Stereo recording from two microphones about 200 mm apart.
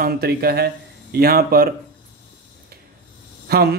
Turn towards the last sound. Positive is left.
turn(degrees=-50)  # may be behind; listen again after turning